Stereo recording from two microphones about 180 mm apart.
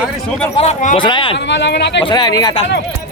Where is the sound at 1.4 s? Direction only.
80° left.